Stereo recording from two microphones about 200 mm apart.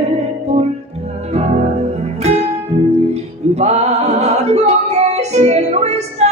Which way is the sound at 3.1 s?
35° right (ahead or behind).